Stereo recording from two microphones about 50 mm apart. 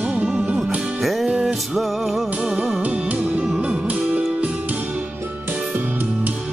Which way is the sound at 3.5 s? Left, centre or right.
Centre.